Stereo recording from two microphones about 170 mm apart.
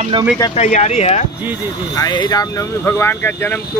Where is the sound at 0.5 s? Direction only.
40° left (ahead or behind).